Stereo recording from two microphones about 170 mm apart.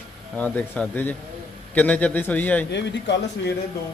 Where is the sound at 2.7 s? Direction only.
90° left.